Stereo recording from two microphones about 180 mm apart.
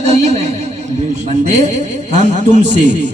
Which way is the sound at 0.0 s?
35° right (ahead or behind).